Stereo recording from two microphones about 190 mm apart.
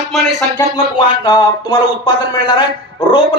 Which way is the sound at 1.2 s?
25° left (ahead or behind).